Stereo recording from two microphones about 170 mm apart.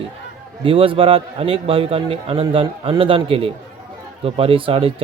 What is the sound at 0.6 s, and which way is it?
Speech, 30° right (ahead or behind).